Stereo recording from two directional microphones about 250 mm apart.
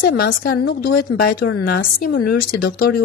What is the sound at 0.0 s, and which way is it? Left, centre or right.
A woman's voice, left.